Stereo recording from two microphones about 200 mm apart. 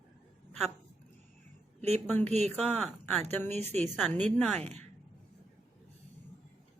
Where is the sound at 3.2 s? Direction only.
10° left (ahead or behind).